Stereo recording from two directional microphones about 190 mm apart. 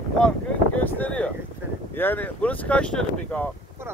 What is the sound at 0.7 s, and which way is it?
Boat, 10° left (ahead or behind).